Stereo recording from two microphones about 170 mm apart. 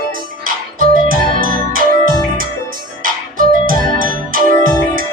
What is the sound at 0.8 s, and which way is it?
Music, 55° right (ahead or behind).